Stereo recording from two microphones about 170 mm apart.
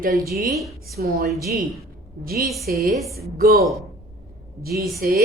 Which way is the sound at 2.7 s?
55° right (ahead or behind).